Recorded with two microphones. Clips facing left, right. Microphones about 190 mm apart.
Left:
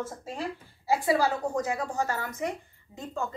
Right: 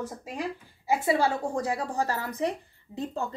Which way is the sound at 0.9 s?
25° right (ahead or behind).